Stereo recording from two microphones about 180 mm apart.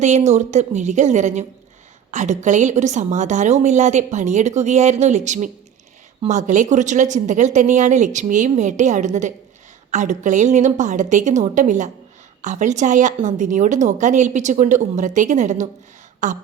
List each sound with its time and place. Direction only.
0.0 s a woman's voice: 40° right (ahead or behind)